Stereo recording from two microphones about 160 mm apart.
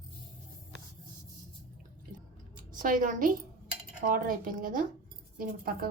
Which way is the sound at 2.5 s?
55° right (ahead or behind).